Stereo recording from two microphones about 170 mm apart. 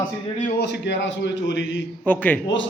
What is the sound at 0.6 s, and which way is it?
A man's voice, 90° left.